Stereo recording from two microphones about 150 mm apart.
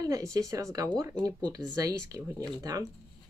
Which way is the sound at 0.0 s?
25° right (ahead or behind).